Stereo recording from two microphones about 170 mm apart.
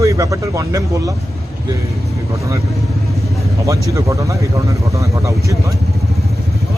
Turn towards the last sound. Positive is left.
turn(degrees=-20)  # may be behind; listen again after turning